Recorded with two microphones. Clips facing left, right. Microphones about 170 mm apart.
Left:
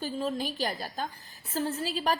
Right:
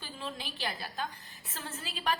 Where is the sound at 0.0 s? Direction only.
40° left (ahead or behind).